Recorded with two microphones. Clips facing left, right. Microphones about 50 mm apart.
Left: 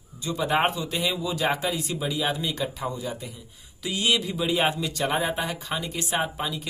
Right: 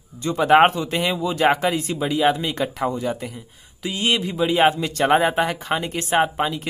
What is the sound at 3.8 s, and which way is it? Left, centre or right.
Speech, right.